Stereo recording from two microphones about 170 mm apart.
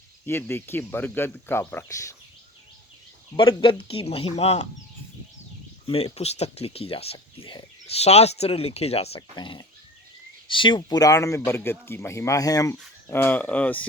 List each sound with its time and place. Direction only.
0.3 s speech: 15° left (ahead or behind)
3.3 s speech: 30° left (ahead or behind)
5.8 s speech: 35° left (ahead or behind); by 13.8 s 10° left (ahead or behind)